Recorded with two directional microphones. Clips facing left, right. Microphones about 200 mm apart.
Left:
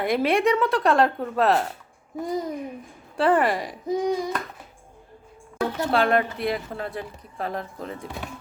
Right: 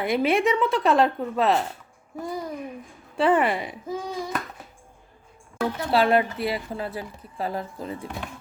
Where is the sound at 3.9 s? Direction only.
15° left (ahead or behind).